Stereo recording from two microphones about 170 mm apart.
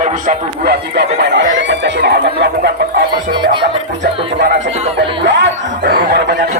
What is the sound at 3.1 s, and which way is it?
Speech, 25° right (ahead or behind).